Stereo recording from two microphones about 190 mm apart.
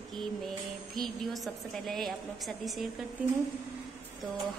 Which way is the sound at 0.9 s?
Centre (ahead or behind).